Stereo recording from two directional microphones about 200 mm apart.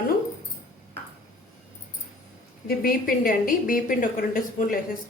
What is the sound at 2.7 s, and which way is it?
A woman's voice, 45° left (ahead or behind).